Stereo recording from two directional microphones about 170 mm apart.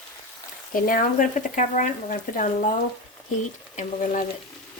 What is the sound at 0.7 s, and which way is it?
Speech, 55° left (ahead or behind).